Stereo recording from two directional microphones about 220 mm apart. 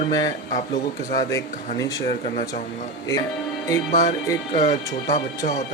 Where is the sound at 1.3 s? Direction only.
15° left (ahead or behind).